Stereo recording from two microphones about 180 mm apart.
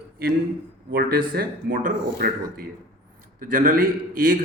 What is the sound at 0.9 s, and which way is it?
Speech, 55° right (ahead or behind).